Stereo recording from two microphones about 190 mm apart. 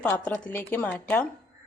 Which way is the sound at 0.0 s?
5° left (ahead or behind).